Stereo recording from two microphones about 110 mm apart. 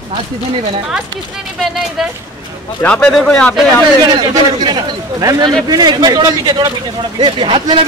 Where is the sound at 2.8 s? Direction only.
10° left (ahead or behind).